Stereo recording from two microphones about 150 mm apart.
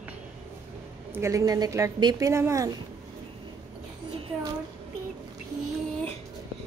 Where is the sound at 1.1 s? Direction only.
20° right (ahead or behind).